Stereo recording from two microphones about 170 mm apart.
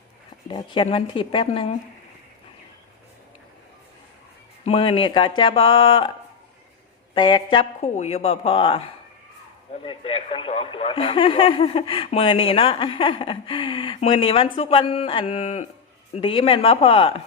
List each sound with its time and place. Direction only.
0.4 s speech: 30° left (ahead or behind)
4.6 s speech: 35° left (ahead or behind)
7.1 s speech: 30° left (ahead or behind)
9.8 s speech: 30° left (ahead or behind)